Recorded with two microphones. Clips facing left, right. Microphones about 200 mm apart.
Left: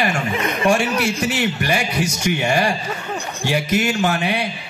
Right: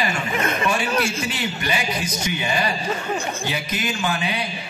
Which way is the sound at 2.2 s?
70° left (ahead or behind).